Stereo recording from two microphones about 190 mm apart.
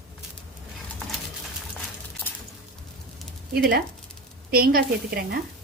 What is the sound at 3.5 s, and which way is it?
Speech, 55° right (ahead or behind).